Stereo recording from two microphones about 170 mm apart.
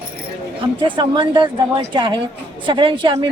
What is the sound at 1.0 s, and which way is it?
Speech, 30° right (ahead or behind).